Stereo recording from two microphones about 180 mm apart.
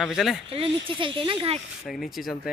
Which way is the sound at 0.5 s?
30° right (ahead or behind).